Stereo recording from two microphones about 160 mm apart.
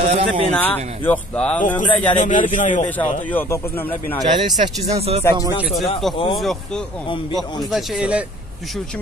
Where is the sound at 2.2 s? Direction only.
55° left (ahead or behind).